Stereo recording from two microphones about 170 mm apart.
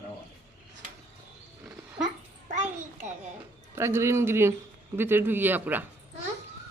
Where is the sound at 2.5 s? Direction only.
45° right (ahead or behind).